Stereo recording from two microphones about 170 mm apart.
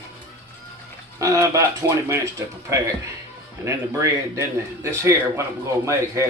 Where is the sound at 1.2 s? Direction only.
20° right (ahead or behind).